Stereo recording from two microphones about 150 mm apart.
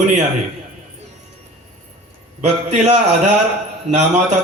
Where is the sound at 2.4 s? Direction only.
50° right (ahead or behind).